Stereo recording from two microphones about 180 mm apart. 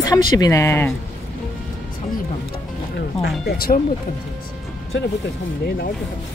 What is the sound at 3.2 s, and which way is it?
Speech, 60° left (ahead or behind).